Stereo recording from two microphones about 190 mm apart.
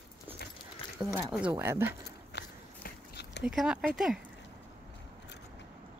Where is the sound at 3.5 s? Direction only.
Centre (ahead or behind).